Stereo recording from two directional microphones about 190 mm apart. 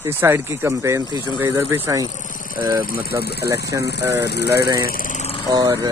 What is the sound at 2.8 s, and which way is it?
Speech, 55° left (ahead or behind).